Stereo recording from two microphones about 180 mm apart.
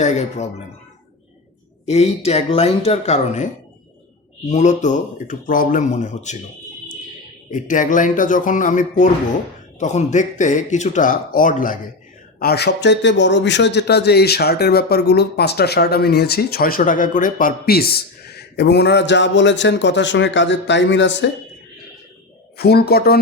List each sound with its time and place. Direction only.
0.0 s speech: 40° left (ahead or behind)
1.9 s speech: 35° left (ahead or behind)
7.5 s speech: 45° left (ahead or behind)
12.4 s a man's voice: 60° left (ahead or behind); by 21.2 s 80° left
22.5 s a man's voice: 60° left (ahead or behind)